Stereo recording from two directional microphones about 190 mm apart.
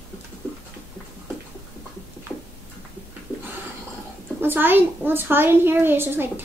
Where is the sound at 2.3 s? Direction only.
10° left (ahead or behind).